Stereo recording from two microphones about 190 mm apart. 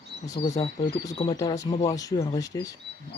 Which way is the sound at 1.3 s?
15° left (ahead or behind).